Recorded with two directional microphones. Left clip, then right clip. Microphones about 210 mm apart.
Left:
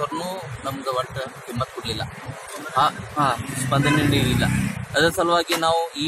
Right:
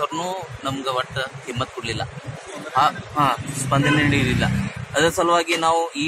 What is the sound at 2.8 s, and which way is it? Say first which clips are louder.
A man's voice: right 2 dB; 20° right (ahead or behind).